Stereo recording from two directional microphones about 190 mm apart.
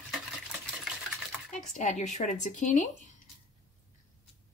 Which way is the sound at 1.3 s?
5° right (ahead or behind).